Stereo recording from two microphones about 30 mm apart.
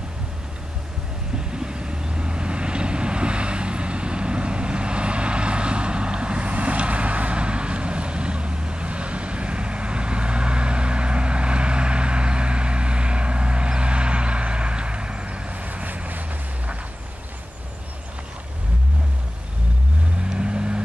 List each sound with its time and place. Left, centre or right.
1.6 s vehicle: right
20.2 s vehicle: right